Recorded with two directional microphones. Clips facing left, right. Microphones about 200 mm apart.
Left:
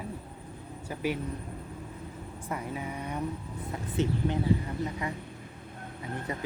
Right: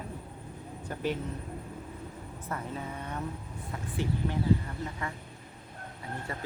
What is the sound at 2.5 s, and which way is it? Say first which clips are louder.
Speech: left 2 dB; 10° left (ahead or behind).